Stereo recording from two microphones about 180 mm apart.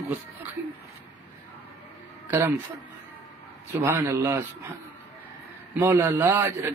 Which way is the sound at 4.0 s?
15° right (ahead or behind).